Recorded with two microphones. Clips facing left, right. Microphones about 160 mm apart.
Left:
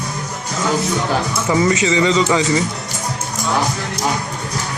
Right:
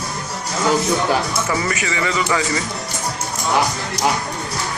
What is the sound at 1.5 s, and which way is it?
A man's voice, 20° left (ahead or behind).